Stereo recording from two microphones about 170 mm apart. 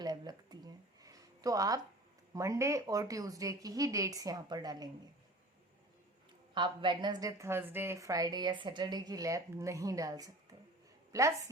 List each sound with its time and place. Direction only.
0.0 s a sound: 25° right (ahead or behind)
2.3 s a woman's voice: 20° right (ahead or behind)
6.5 s a woman's voice: 30° right (ahead or behind)